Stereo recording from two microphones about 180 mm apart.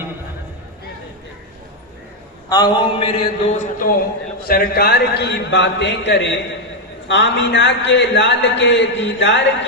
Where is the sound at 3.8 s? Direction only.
50° left (ahead or behind).